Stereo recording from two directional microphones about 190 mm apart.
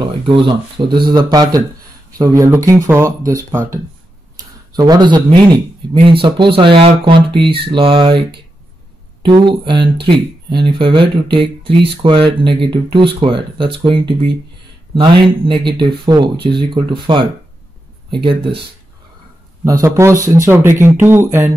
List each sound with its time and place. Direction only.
0.0 s speech: 25° right (ahead or behind)
19.6 s speech: 15° right (ahead or behind)